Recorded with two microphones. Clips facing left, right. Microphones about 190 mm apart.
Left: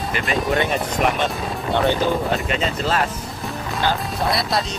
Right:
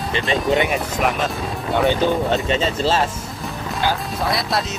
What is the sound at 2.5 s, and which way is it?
Speech, 30° right (ahead or behind).